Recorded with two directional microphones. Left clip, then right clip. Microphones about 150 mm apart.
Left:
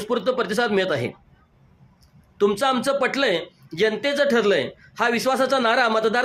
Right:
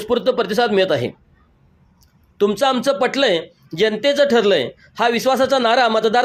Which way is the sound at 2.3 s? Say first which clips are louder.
Right 3 dB; 25° right (ahead or behind).